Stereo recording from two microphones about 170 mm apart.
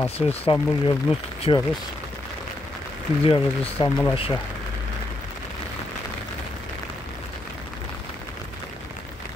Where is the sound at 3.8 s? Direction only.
30° left (ahead or behind).